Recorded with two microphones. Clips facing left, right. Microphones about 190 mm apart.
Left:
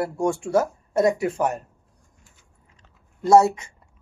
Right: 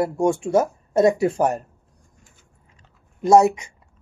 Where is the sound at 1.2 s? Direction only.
35° right (ahead or behind).